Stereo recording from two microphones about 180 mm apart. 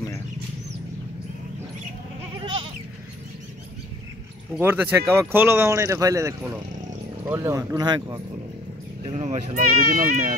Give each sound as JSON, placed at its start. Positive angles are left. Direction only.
{"t": 4.6, "sound": "speech", "side_deg": -15}
{"t": 9.0, "sound": "speech", "side_deg": -40}